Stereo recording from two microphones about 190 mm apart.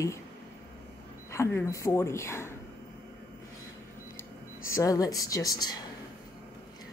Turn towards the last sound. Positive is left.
turn(degrees=20)  # may be behind; listen again after turning